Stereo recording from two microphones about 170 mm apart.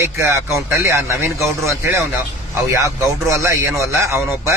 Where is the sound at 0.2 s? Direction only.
15° right (ahead or behind).